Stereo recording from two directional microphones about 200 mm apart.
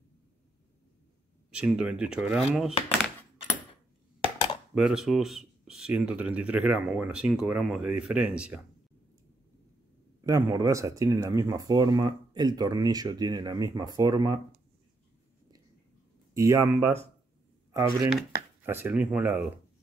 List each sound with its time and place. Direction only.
1.5 s speech: 5° right (ahead or behind)
4.7 s speech: 5° right (ahead or behind)
10.2 s speech: 15° right (ahead or behind)
16.3 s speech: 15° right (ahead or behind)